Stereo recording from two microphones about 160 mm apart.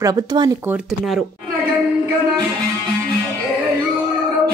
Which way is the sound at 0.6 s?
5° right (ahead or behind).